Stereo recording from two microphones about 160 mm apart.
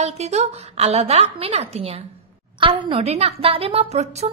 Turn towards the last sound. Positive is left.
turn(degrees=-40)  # may be behind; listen again after turning